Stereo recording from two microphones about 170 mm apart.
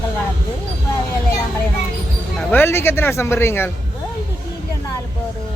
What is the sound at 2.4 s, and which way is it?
Speech, 10° left (ahead or behind).